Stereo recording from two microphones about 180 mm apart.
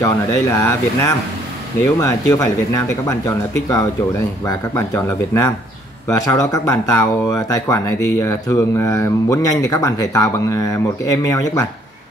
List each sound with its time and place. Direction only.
0.5 s speech: 15° left (ahead or behind)